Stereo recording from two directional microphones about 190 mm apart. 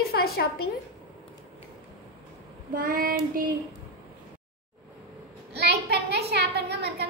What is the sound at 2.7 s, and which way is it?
Child singing, 45° right (ahead or behind).